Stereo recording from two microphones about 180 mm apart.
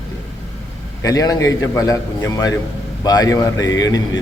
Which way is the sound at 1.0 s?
20° left (ahead or behind).